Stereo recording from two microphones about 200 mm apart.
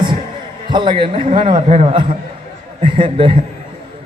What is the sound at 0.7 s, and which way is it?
A man's voice, 25° right (ahead or behind).